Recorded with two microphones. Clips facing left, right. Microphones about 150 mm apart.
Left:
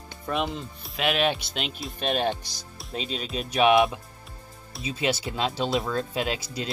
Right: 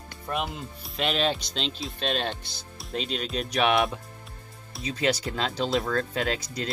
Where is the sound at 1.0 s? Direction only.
10° left (ahead or behind).